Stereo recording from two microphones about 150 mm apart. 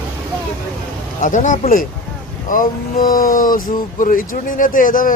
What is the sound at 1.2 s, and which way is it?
Speech, 60° left (ahead or behind).